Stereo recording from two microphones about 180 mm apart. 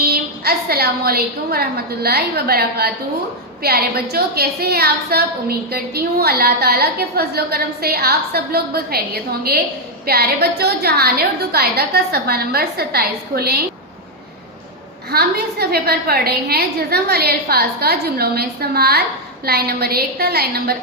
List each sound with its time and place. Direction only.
0.0 s a woman's voice: 60° right (ahead or behind)
15.1 s a woman's voice: 60° right (ahead or behind)